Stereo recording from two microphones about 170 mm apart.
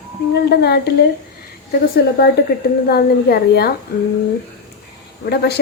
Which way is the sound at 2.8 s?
65° left (ahead or behind).